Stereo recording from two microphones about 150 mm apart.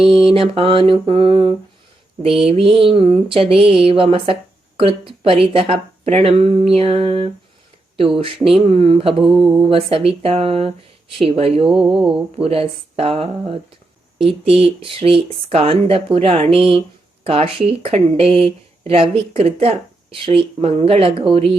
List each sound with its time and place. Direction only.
0.3 s speech: 40° right (ahead or behind)
8.4 s speech: centre (ahead or behind)
8.6 s speech: 40° right (ahead or behind)